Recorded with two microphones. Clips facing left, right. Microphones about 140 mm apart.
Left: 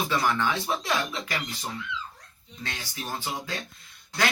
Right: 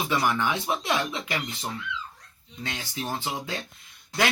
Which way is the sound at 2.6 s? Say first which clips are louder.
Right 3 dB; 20° right (ahead or behind).